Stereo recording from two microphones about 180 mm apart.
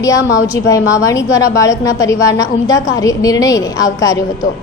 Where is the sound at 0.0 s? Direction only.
20° left (ahead or behind).